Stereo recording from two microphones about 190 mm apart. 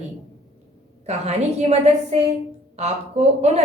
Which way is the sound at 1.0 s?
35° right (ahead or behind).